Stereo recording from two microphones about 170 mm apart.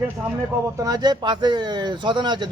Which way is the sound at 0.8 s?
20° right (ahead or behind).